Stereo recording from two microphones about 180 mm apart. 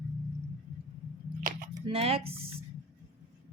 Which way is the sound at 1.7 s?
30° right (ahead or behind).